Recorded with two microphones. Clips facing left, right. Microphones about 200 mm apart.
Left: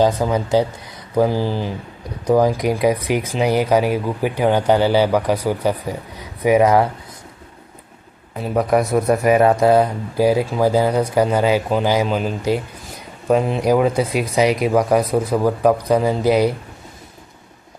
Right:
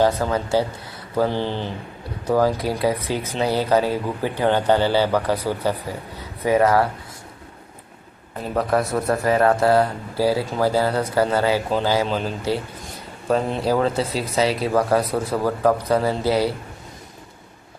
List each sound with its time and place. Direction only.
0.0 s speech: 15° left (ahead or behind)
8.4 s speech: 15° left (ahead or behind)